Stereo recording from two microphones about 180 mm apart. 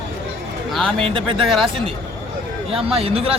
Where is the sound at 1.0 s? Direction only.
30° right (ahead or behind).